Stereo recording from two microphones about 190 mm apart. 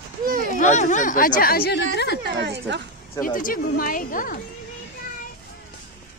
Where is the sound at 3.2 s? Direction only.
45° left (ahead or behind).